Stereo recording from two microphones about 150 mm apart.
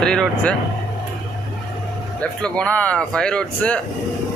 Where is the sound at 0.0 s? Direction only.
5° left (ahead or behind).